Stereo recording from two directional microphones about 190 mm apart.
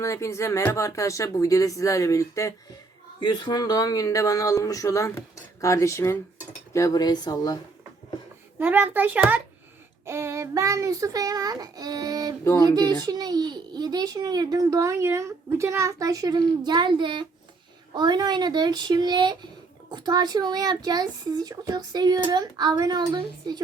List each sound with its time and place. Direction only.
0.0 s speech: 15° left (ahead or behind)
8.5 s a child's voice: 10° right (ahead or behind)
12.5 s speech: 15° left (ahead or behind)
12.7 s a child's voice: 20° right (ahead or behind)